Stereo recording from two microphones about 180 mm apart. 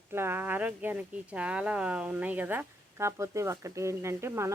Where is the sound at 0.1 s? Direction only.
15° right (ahead or behind).